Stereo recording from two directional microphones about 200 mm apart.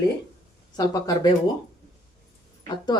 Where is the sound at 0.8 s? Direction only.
20° left (ahead or behind).